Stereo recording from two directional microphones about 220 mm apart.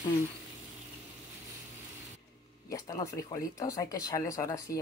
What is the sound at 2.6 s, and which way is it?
Speech, 15° left (ahead or behind).